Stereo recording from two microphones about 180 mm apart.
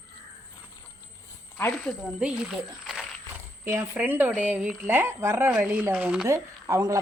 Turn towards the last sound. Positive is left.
turn(degrees=-20)  # may be behind; listen again after turning